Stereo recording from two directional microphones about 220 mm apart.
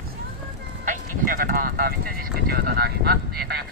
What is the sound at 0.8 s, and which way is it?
Speech, 40° right (ahead or behind).